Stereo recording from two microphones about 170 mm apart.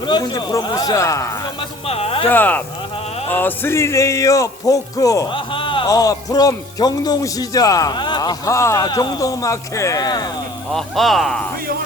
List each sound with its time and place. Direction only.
0.0 s speech: 25° left (ahead or behind)
1.9 s speech: 35° left (ahead or behind)
2.3 s speech: 10° left (ahead or behind)
5.3 s speech: 30° left (ahead or behind)
10.7 s speech: centre (ahead or behind)